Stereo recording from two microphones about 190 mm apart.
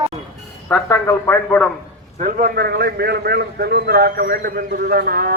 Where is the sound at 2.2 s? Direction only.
45° right (ahead or behind).